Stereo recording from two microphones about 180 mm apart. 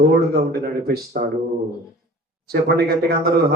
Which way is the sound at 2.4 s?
60° right (ahead or behind).